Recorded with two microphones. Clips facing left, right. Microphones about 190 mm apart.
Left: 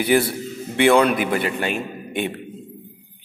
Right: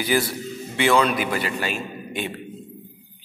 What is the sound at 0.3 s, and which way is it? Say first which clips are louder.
A man's voice: left 2 dB; 55° left (ahead or behind).